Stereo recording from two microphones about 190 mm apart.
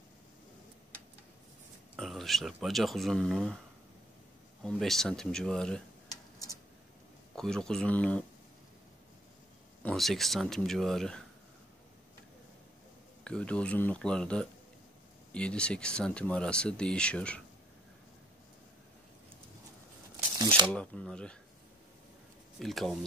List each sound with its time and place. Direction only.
2.0 s speech: centre (ahead or behind)
4.6 s speech: centre (ahead or behind)
7.3 s speech: 5° left (ahead or behind)
9.8 s speech: centre (ahead or behind)
13.2 s speech: 5° left (ahead or behind)
20.3 s shuffling cards: 25° right (ahead or behind)
20.7 s speech: 5° left (ahead or behind)
22.6 s speech: centre (ahead or behind)